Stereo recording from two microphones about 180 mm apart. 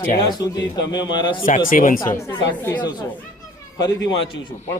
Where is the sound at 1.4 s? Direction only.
45° left (ahead or behind).